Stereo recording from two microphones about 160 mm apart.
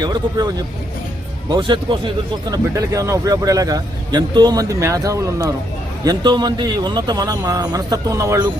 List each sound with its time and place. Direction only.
0.0 s speech: 25° right (ahead or behind)